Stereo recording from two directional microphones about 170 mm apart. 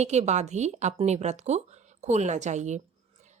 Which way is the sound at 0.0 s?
40° right (ahead or behind).